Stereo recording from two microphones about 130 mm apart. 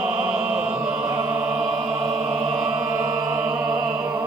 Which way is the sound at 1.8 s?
50° right (ahead or behind).